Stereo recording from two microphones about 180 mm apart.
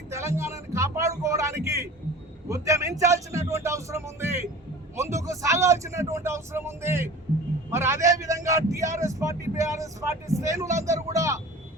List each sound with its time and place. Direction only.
0.1 s a man's voice: 15° right (ahead or behind)